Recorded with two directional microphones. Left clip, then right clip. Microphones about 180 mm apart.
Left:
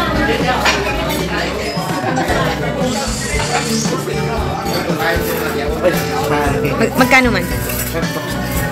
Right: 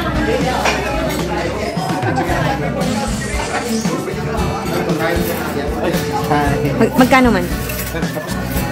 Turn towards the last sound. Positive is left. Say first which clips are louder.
# even
turn(degrees=-20)  # may be behind; listen again after turning